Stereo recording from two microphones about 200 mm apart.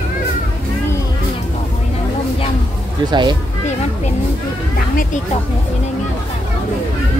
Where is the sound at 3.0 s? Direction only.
20° right (ahead or behind).